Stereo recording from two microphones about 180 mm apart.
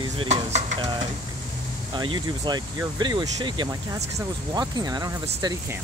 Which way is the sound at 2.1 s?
25° right (ahead or behind).